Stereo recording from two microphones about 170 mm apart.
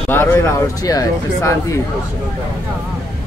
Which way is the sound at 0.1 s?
15° left (ahead or behind).